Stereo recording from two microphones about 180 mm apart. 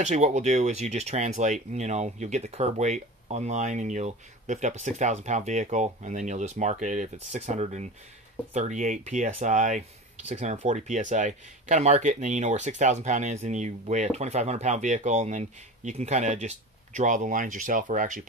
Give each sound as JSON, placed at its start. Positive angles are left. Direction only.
{"t": 0.0, "sound": "speech", "side_deg": -40}